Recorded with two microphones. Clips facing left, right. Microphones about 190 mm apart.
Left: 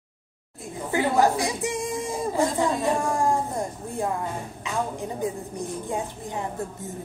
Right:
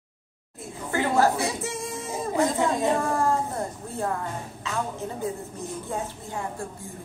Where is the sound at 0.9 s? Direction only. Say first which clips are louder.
Left 1 dB; 15° left (ahead or behind).